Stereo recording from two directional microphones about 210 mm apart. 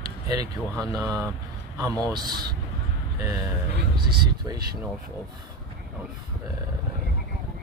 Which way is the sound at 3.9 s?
20° right (ahead or behind).